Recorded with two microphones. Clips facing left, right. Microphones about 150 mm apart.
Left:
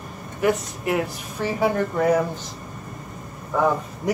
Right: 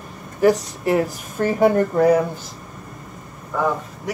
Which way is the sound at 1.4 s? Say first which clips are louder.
Right 6 dB; centre (ahead or behind).